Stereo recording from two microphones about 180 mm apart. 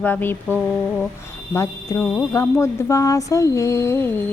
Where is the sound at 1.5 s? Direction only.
15° left (ahead or behind).